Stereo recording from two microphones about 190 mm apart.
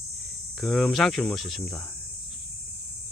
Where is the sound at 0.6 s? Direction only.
Centre (ahead or behind).